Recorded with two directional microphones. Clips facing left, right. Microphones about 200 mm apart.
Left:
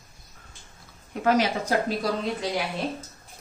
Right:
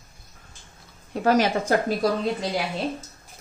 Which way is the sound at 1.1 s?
30° right (ahead or behind).